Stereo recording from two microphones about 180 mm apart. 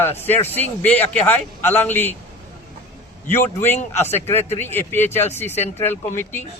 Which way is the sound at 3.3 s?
10° left (ahead or behind).